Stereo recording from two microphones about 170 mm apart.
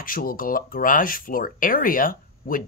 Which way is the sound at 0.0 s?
55° left (ahead or behind).